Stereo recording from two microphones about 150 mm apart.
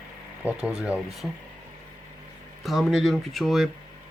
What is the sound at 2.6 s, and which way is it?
Speech, centre (ahead or behind).